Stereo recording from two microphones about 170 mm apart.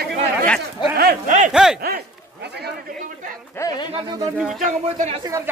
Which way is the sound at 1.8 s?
70° right (ahead or behind).